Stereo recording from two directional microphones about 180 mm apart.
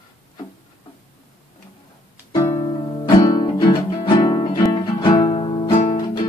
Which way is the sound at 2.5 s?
25° left (ahead or behind).